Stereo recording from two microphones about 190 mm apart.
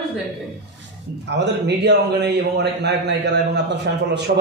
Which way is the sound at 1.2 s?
65° right (ahead or behind).